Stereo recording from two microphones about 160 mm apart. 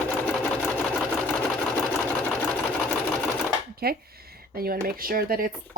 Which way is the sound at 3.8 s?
70° right (ahead or behind).